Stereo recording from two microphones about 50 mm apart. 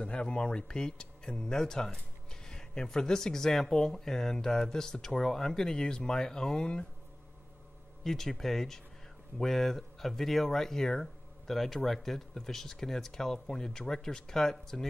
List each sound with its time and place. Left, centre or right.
0.0 s speech: left
8.0 s speech: centre